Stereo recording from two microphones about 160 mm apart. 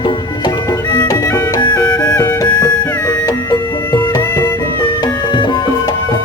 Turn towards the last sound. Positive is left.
turn(degrees=30)  # may be behind; listen again after turning